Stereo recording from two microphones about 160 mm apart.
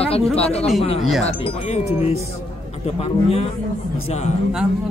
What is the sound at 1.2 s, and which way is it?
Speech, 40° left (ahead or behind).